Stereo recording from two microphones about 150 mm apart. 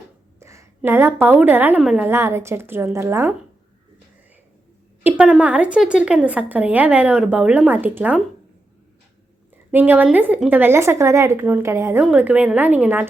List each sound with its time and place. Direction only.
0.3 s a sound: 20° right (ahead or behind)
0.8 s a woman's voice: 15° right (ahead or behind)
2.0 s a woman's voice: 15° right (ahead or behind)
5.0 s a woman's voice: 10° right (ahead or behind)
9.7 s a woman's voice: 10° right (ahead or behind)